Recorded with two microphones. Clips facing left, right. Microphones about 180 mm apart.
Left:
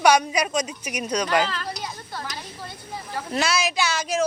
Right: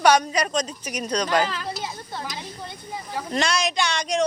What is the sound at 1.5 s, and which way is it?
Speech, 15° right (ahead or behind).